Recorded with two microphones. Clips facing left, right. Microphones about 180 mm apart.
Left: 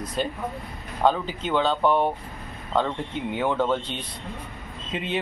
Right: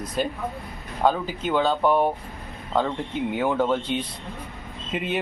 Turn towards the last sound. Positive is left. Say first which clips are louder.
# right 2 dB
turn(degrees=-5)  # may be behind; listen again after turning